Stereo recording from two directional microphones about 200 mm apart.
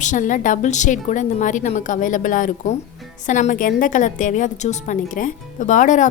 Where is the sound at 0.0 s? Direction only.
40° left (ahead or behind).